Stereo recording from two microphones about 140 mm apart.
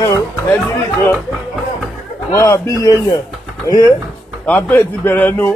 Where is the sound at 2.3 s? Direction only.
20° left (ahead or behind).